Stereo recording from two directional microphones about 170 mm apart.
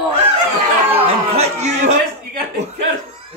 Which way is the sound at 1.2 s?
40° right (ahead or behind).